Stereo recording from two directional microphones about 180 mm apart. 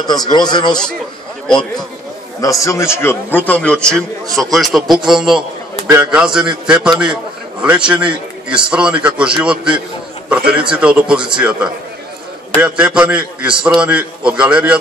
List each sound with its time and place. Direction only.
0.0 s speech: 20° left (ahead or behind)
2.4 s a man's voice: 15° left (ahead or behind); by 14.8 s 5° right (ahead or behind)